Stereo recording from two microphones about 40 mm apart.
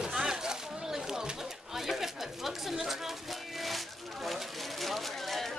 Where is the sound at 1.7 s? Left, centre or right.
Centre.